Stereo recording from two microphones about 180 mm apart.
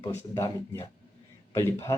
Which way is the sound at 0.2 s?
15° left (ahead or behind).